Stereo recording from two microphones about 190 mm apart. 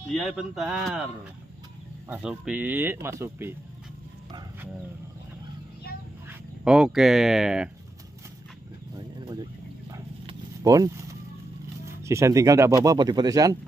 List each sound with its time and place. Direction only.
0.1 s speech: centre (ahead or behind)
2.0 s speech: 5° right (ahead or behind)
6.6 s speech: 5° right (ahead or behind)
8.9 s a sound: 20° right (ahead or behind)
10.6 s speech: 20° right (ahead or behind)
12.0 s speech: 15° right (ahead or behind)